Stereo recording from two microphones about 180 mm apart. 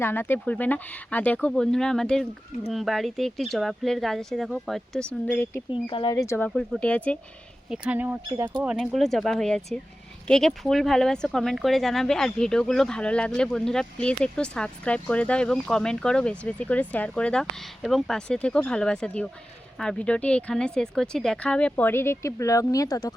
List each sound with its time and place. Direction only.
0.0 s speech: 10° left (ahead or behind)
5.7 s speech: 30° left (ahead or behind)
6.5 s speech: 5° left (ahead or behind)
7.7 s speech: 10° right (ahead or behind); by 23.1 s 20° left (ahead or behind)